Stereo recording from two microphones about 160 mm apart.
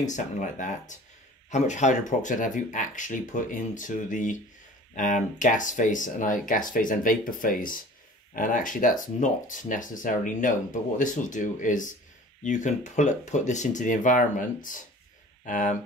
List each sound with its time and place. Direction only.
0.0 s speech: 50° left (ahead or behind)